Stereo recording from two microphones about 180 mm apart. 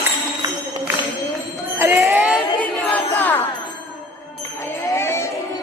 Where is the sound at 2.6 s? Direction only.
5° left (ahead or behind).